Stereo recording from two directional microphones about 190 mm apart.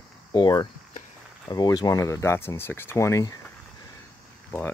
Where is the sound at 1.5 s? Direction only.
20° left (ahead or behind).